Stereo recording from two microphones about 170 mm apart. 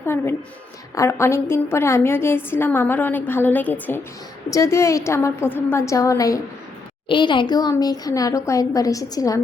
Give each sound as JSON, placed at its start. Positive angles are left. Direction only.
{"t": 0.0, "sound": "a woman's voice", "side_deg": 15}